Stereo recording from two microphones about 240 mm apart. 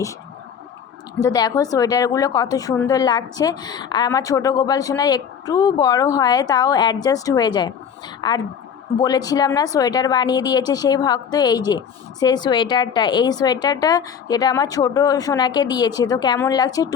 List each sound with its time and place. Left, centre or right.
1.2 s a woman's voice: centre